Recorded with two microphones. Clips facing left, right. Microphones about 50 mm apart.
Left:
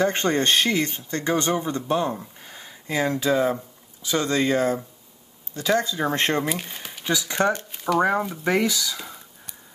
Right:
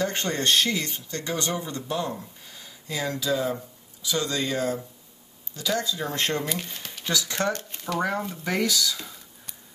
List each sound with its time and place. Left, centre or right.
0.0 s speech: left
6.4 s speech: centre
7.7 s a sound: centre
8.5 s speech: left